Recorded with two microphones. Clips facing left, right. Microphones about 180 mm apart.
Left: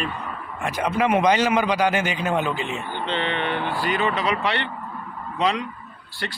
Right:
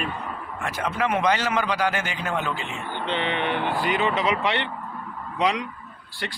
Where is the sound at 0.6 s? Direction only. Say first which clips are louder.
Left 4 dB; 15° left (ahead or behind).